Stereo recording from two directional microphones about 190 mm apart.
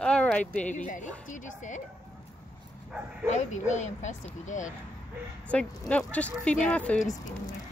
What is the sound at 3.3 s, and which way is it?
Speech, 35° left (ahead or behind).